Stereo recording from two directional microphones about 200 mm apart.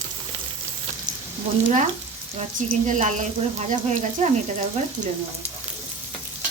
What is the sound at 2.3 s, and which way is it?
A woman's voice, 35° right (ahead or behind).